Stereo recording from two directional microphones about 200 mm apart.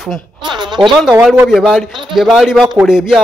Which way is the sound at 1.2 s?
Centre (ahead or behind).